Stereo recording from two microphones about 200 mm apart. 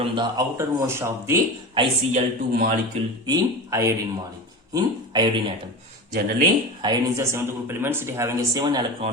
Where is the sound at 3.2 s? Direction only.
20° right (ahead or behind).